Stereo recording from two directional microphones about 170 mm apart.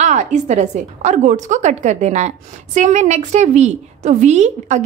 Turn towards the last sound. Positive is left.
turn(degrees=-45)  # may be behind; listen again after turning